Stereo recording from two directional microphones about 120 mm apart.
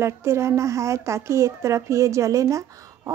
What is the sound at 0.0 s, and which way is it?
Speech, 20° right (ahead or behind).